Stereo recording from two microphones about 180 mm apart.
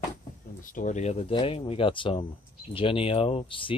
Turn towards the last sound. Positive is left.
turn(degrees=30)  # may be behind; listen again after turning